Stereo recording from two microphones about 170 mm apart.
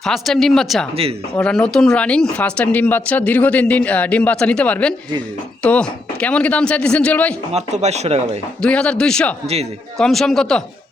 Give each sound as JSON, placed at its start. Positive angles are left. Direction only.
{"t": 0.0, "sound": "speech", "side_deg": 0}
{"t": 7.5, "sound": "speech", "side_deg": -40}
{"t": 8.6, "sound": "speech", "side_deg": 5}